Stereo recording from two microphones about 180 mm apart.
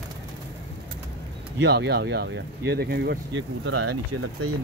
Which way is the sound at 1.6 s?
65° right (ahead or behind).